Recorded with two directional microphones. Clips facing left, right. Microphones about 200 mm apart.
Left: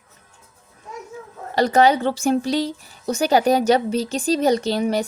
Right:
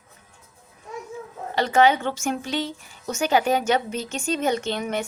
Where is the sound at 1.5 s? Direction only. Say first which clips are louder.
Left 3 dB; 40° left (ahead or behind).